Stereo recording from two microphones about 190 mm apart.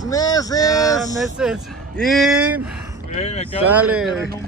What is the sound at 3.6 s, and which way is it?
Speech, 10° right (ahead or behind).